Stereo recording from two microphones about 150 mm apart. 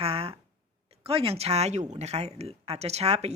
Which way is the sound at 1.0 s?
40° right (ahead or behind).